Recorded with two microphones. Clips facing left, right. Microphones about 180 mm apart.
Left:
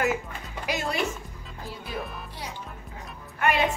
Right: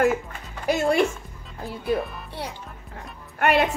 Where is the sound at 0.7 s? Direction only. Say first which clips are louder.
Right 9 dB; 55° right (ahead or behind).